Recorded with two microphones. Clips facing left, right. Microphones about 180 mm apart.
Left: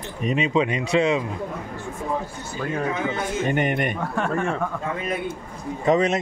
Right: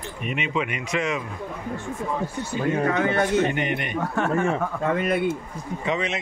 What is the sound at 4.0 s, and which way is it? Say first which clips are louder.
Speech: right 2 dB; centre (ahead or behind).